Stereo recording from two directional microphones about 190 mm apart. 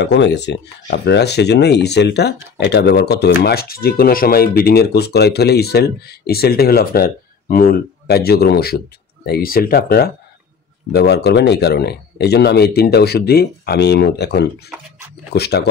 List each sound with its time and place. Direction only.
0.0 s speech: 70° left (ahead or behind)